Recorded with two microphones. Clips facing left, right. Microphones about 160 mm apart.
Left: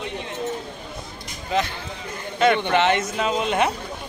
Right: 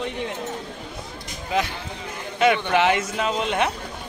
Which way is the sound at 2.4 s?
10° right (ahead or behind).